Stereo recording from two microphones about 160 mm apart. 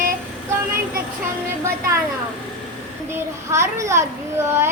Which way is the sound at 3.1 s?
15° right (ahead or behind).